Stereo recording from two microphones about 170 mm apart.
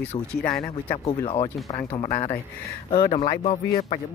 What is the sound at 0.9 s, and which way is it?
Speech, 35° left (ahead or behind).